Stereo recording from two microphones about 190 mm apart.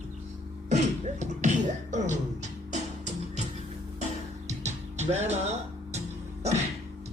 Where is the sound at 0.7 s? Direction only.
35° right (ahead or behind).